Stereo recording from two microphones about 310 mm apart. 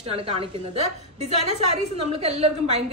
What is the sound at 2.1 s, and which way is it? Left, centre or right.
Speech, centre.